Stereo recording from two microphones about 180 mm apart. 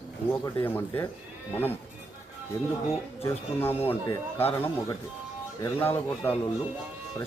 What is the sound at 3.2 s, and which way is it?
Speech, 10° left (ahead or behind).